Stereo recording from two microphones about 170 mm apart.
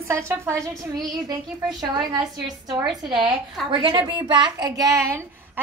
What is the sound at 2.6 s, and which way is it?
A child's voice, 25° right (ahead or behind).